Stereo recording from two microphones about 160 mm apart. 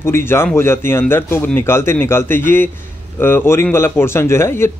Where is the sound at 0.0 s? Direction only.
15° left (ahead or behind).